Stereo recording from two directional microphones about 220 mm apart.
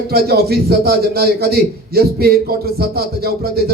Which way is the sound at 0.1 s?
45° right (ahead or behind).